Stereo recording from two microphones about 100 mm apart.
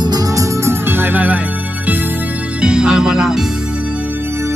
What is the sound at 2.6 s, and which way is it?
Music, 10° right (ahead or behind).